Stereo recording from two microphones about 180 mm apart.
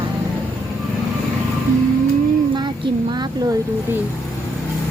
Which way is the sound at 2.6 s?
25° right (ahead or behind).